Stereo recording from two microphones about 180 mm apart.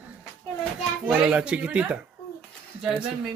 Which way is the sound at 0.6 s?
5° right (ahead or behind).